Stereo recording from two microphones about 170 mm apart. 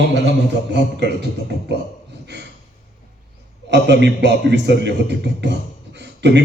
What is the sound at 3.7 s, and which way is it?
Speech, 90° right.